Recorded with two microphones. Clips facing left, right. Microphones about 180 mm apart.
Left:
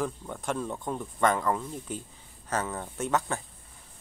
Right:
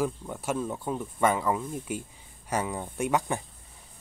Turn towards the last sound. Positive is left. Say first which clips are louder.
# right 2 dB
turn(degrees=-15)  # may be behind; listen again after turning